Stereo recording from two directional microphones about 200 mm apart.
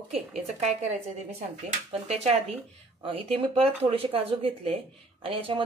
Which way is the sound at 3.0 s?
30° right (ahead or behind).